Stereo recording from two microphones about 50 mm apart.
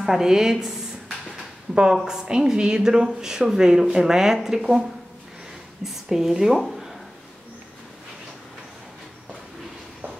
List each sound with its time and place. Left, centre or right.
0.0 s speech: centre
2.0 s speech: centre
5.9 s a woman's voice: centre